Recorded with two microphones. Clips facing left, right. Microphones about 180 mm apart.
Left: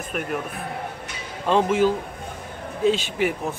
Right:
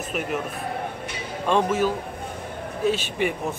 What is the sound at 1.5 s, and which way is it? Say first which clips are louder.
Speech: left 2 dB; 15° left (ahead or behind).